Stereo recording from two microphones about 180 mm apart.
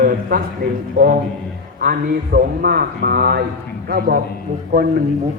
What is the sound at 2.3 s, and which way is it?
Speech, 55° right (ahead or behind).